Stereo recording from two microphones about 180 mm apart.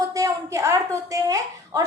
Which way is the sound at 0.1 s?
20° right (ahead or behind).